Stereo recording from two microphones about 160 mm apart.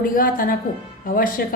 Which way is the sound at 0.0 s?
60° left (ahead or behind).